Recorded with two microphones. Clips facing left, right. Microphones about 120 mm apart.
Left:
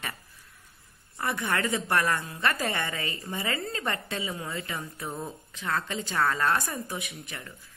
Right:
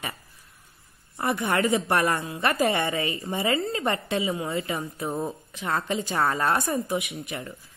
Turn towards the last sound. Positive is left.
turn(degrees=-25)  # may be behind; listen again after turning